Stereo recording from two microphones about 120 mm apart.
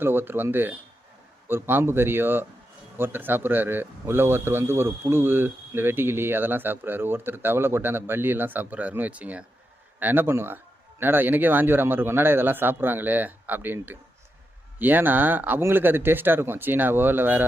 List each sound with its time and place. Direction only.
0.0 s a man's voice: 15° right (ahead or behind)